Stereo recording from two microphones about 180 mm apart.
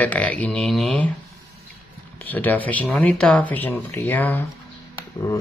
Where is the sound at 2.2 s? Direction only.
10° left (ahead or behind).